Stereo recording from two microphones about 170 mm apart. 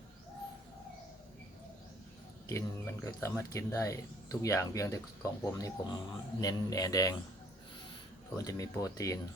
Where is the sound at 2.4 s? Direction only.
15° left (ahead or behind).